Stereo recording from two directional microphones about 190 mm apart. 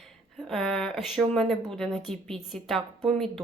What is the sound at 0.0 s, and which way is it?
Speech, centre (ahead or behind).